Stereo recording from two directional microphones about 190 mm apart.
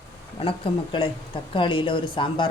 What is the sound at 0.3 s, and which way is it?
Speech, 30° left (ahead or behind).